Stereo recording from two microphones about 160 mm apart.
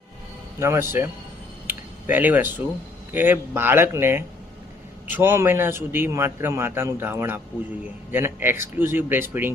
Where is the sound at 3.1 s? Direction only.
10° right (ahead or behind).